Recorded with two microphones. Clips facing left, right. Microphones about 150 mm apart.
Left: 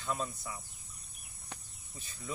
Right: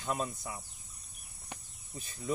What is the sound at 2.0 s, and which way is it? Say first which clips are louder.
Cricket: right 7 dB; 45° right (ahead or behind).